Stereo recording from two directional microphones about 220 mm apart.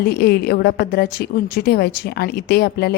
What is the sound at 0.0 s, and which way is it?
A woman's voice, 45° left (ahead or behind).